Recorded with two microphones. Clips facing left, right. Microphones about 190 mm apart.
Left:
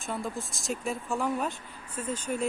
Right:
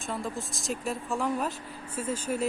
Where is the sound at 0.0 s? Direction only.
Centre (ahead or behind).